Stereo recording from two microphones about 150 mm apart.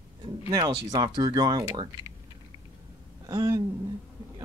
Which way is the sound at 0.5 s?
25° right (ahead or behind).